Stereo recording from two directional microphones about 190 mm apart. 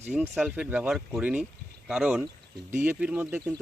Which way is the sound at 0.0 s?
5° right (ahead or behind).